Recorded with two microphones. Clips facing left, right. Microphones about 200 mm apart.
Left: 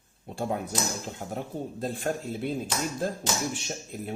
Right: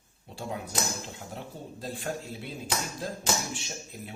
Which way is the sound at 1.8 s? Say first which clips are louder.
Left 4 dB; 55° left (ahead or behind).